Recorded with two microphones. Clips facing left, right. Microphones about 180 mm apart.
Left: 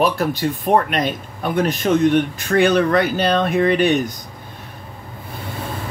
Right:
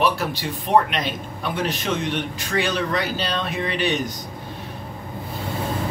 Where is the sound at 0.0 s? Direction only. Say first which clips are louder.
Left 4 dB; 50° left (ahead or behind).